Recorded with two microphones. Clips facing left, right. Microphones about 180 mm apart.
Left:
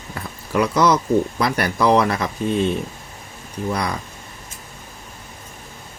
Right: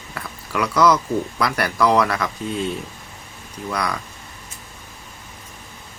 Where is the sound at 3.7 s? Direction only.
25° left (ahead or behind).